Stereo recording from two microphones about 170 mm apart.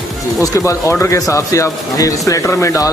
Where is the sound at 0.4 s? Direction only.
20° left (ahead or behind).